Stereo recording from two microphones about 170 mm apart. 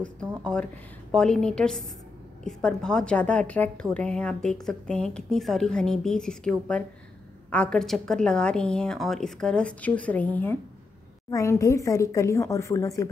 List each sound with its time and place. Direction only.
0.4 s a woman's voice: 5° left (ahead or behind)